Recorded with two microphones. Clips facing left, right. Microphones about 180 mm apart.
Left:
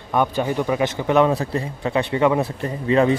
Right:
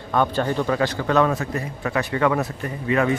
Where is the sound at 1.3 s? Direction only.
30° left (ahead or behind).